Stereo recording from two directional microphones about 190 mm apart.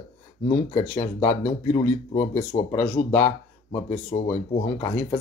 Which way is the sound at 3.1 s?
10° left (ahead or behind).